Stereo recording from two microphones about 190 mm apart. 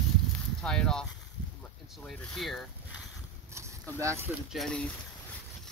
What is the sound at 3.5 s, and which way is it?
Speech, 15° right (ahead or behind).